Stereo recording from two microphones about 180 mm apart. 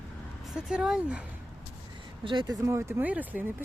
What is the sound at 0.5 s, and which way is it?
Speech, 5° right (ahead or behind).